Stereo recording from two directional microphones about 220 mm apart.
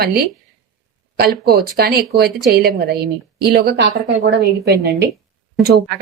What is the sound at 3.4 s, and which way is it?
Speech, 45° right (ahead or behind).